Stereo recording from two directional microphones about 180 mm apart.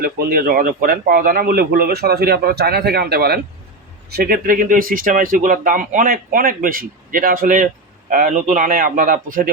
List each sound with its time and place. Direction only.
0.0 s a man's voice: 55° right (ahead or behind)